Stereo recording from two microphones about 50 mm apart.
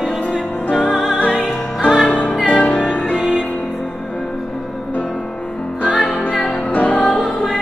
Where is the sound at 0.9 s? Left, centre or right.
Centre.